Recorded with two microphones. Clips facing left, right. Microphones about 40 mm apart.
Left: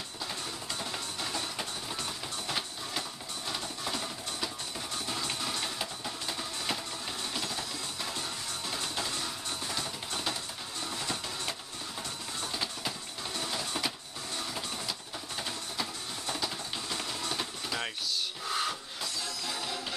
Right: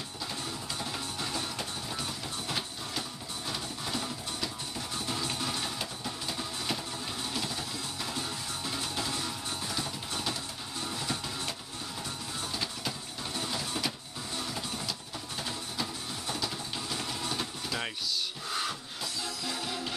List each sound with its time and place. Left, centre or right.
0.7 s music: centre
12.5 s printer: centre
17.3 s a sound: centre
18.5 s music: centre